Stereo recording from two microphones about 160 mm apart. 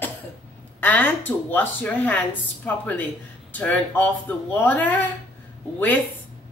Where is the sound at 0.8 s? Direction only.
10° left (ahead or behind).